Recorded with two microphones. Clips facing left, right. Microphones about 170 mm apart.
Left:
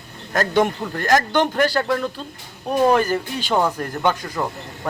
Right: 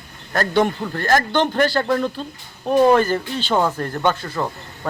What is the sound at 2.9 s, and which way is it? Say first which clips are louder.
Speech: right 2 dB; 10° left (ahead or behind).